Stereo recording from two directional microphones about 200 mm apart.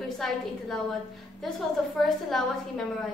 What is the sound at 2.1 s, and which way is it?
Speech, centre (ahead or behind).